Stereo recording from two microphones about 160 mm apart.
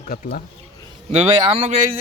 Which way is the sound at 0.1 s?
70° left (ahead or behind).